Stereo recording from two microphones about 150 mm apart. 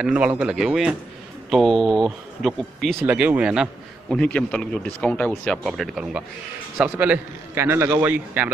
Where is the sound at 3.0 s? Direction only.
10° right (ahead or behind).